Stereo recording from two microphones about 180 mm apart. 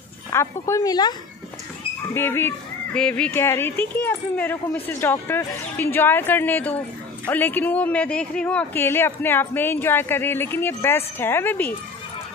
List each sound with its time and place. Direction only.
0.3 s speech: 15° left (ahead or behind)
2.1 s speech: 10° left (ahead or behind)